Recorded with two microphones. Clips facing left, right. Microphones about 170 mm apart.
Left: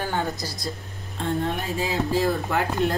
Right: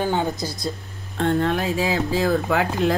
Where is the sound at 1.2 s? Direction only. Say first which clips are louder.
Right 6 dB; 85° right.